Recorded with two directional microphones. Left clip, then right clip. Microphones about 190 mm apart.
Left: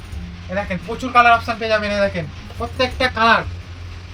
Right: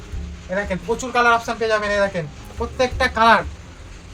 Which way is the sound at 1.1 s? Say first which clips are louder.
Left 5 dB; 20° right (ahead or behind).